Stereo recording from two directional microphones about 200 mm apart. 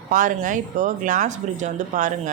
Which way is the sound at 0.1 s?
40° right (ahead or behind).